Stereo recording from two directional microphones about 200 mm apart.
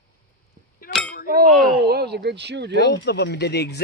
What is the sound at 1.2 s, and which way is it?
Clang, 50° right (ahead or behind).